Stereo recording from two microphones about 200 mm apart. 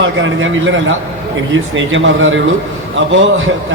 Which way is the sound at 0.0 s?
70° right (ahead or behind).